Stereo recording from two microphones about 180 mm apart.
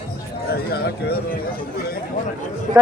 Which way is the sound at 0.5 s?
60° left (ahead or behind).